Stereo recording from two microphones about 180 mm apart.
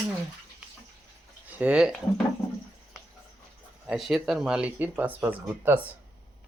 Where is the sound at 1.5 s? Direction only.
5° right (ahead or behind).